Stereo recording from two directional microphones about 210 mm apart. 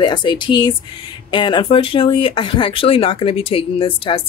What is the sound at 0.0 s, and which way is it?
Speech, 20° left (ahead or behind).